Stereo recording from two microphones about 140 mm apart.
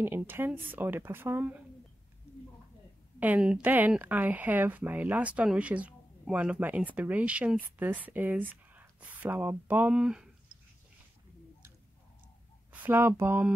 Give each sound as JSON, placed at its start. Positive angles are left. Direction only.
{"t": 0.0, "sound": "speech", "side_deg": -15}
{"t": 3.2, "sound": "speech", "side_deg": -10}
{"t": 12.7, "sound": "speech", "side_deg": -15}